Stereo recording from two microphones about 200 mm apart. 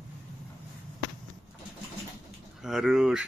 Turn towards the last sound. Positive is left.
turn(degrees=0)  # may be behind; listen again after turning